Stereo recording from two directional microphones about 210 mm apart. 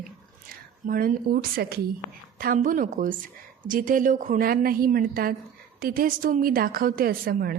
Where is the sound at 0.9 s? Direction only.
45° right (ahead or behind).